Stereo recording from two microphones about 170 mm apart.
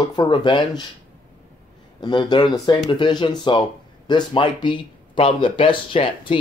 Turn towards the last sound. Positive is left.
turn(degrees=30)  # may be behind; listen again after turning